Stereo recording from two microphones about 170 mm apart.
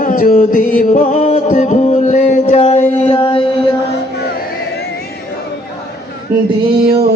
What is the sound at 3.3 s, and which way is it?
Mantra, 30° left (ahead or behind).